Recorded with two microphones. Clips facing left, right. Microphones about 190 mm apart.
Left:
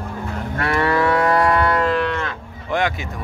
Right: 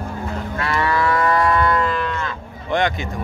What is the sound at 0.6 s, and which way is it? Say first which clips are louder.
Moo: left 2 dB; 60° left (ahead or behind).